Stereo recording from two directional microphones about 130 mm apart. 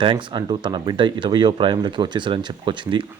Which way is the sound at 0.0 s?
40° right (ahead or behind).